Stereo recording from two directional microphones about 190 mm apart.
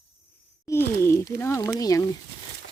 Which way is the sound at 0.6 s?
15° left (ahead or behind).